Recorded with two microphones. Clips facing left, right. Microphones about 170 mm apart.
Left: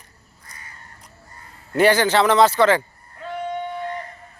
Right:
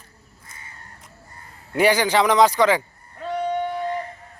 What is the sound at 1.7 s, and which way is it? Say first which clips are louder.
A man's voice: left 2 dB; 10° right (ahead or behind).